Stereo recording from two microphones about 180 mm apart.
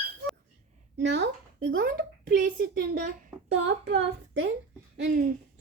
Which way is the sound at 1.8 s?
55° right (ahead or behind).